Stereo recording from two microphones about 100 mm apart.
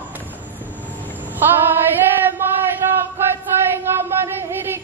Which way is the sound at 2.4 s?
20° right (ahead or behind).